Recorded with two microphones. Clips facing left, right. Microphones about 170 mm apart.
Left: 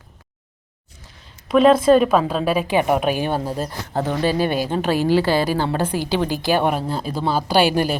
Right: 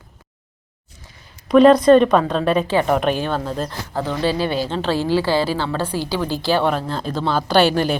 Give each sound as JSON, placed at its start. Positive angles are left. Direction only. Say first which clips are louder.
{"t": 1.5, "sound": "speech", "louder": "right 3 dB", "side_deg": 0}
{"t": 4.2, "sound": "speech", "louder": "even", "side_deg": 50}
{"t": 4.5, "sound": "speech", "louder": "left 1 dB", "side_deg": 15}